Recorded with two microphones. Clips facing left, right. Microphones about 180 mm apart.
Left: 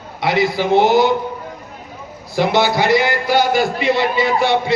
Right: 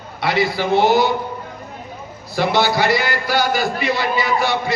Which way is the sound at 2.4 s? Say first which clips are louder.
Left 2 dB; 20° left (ahead or behind).